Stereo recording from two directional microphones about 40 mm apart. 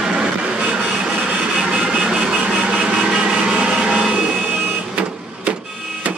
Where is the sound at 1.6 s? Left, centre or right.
Centre.